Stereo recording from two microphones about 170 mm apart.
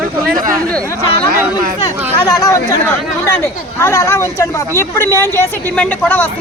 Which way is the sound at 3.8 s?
15° left (ahead or behind).